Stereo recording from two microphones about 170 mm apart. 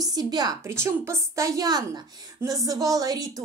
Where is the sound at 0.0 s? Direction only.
25° right (ahead or behind).